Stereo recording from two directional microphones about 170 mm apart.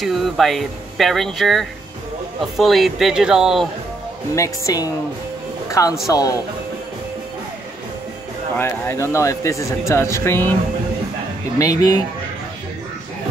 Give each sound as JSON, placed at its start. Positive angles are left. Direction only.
{"t": 0.0, "sound": "speech", "side_deg": 0}
{"t": 4.4, "sound": "speech", "side_deg": 20}
{"t": 8.5, "sound": "speech", "side_deg": 15}
{"t": 11.5, "sound": "speech", "side_deg": 20}